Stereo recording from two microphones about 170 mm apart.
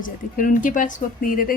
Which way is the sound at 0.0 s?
50° left (ahead or behind).